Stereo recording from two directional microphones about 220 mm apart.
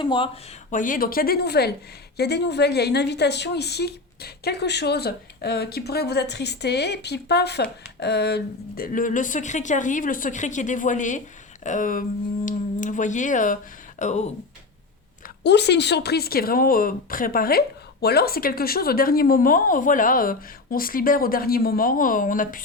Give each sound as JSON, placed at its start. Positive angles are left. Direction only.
{"t": 0.0, "sound": "speech", "side_deg": 20}
{"t": 0.7, "sound": "a woman's voice", "side_deg": 35}
{"t": 15.4, "sound": "a woman's voice", "side_deg": 50}